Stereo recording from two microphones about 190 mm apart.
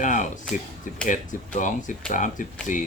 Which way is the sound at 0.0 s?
40° left (ahead or behind).